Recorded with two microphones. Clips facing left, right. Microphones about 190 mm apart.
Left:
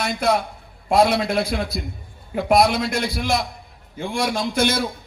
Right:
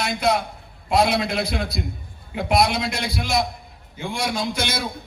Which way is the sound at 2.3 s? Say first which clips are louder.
Left 3 dB; 50° left (ahead or behind).